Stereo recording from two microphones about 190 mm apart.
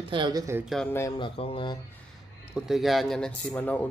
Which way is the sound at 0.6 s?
Centre (ahead or behind).